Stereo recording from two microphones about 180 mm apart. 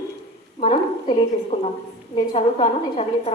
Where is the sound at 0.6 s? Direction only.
35° left (ahead or behind).